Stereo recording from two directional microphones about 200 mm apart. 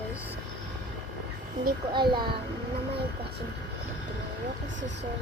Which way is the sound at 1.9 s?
20° right (ahead or behind).